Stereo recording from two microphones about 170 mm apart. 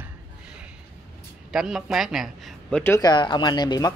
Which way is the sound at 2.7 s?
15° left (ahead or behind).